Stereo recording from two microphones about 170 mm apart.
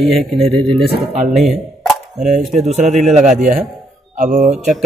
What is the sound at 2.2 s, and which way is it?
Speech, 40° right (ahead or behind).